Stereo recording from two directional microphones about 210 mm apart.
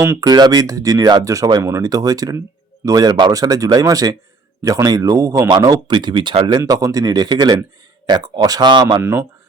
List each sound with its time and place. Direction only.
0.0 s speech: 15° right (ahead or behind)